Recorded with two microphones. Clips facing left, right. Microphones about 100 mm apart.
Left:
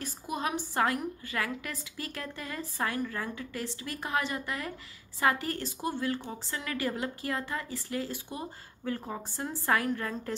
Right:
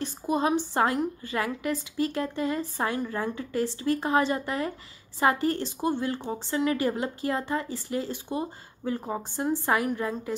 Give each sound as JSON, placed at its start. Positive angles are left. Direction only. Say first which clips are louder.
{"t": 0.0, "sound": "a woman's voice", "louder": "right 7 dB", "side_deg": -30}